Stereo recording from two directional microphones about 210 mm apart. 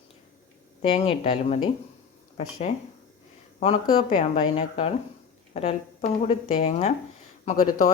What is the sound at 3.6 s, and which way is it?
A man's voice, 25° left (ahead or behind).